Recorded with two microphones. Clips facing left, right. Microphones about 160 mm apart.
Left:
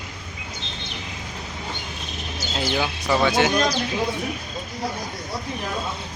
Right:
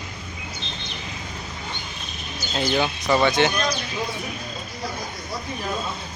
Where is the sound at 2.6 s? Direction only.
5° left (ahead or behind).